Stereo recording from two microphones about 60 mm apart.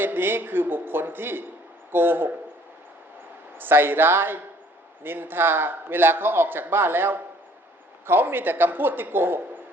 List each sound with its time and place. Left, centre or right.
0.0 s a man's voice: right
3.6 s a man's voice: right